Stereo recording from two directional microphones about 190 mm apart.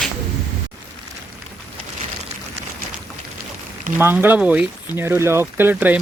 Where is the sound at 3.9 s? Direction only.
10° right (ahead or behind).